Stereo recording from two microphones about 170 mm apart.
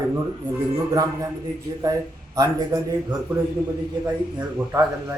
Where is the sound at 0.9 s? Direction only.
20° right (ahead or behind).